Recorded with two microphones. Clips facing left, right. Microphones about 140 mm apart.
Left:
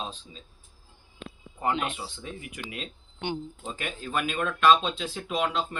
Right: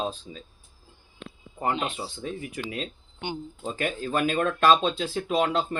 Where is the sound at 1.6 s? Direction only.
40° right (ahead or behind).